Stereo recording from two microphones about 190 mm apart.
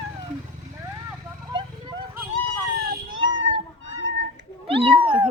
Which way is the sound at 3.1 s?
80° right.